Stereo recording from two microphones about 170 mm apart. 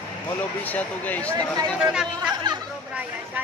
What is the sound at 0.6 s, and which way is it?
Speech, 10° left (ahead or behind).